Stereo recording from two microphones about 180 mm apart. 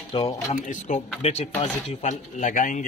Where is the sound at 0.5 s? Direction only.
40° left (ahead or behind).